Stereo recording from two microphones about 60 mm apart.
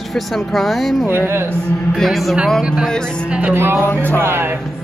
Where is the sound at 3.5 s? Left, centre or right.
Right.